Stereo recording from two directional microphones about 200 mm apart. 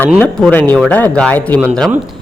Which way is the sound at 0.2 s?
5° left (ahead or behind).